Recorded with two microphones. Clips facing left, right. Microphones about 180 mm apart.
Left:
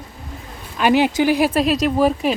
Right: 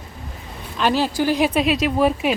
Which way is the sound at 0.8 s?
15° left (ahead or behind).